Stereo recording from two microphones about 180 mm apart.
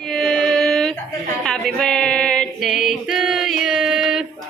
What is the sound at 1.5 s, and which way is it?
Singing, centre (ahead or behind).